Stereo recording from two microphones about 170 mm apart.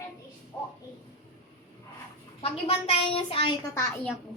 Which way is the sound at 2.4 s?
35° left (ahead or behind).